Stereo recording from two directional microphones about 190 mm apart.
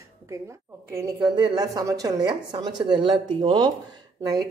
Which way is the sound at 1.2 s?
25° right (ahead or behind).